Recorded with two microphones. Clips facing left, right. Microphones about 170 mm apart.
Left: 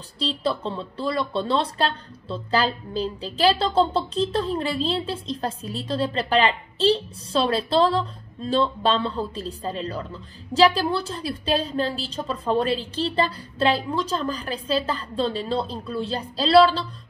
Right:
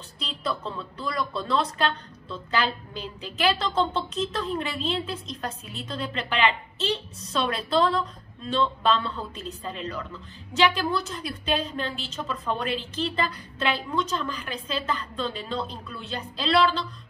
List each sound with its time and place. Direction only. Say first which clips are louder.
0.2 s speech: left 6 dB; 30° left (ahead or behind)